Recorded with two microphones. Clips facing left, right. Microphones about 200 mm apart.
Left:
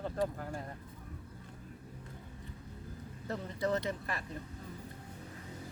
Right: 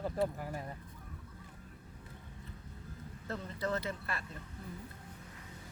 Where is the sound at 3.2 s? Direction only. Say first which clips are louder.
Left 3 dB; 15° left (ahead or behind).